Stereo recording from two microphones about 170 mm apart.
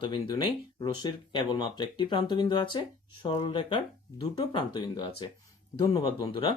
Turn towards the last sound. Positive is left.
turn(degrees=30)  # may be behind; listen again after turning